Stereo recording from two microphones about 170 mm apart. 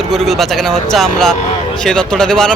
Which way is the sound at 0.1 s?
Centre (ahead or behind).